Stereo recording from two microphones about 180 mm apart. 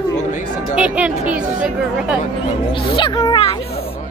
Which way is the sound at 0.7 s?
5° right (ahead or behind).